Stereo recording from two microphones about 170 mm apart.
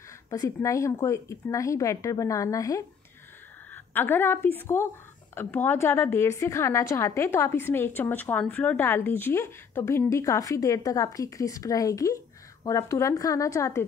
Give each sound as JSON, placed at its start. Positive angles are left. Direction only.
{"t": 0.3, "sound": "a woman's voice", "side_deg": 20}